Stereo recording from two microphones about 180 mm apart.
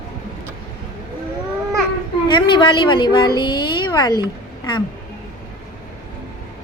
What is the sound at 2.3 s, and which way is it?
A woman's voice, 25° left (ahead or behind).